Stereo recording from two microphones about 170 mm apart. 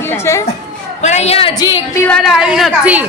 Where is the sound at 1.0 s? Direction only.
40° left (ahead or behind).